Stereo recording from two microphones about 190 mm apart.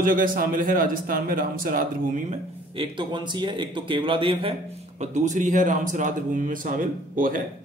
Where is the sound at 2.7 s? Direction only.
25° right (ahead or behind); by 7.4 s 45° right (ahead or behind).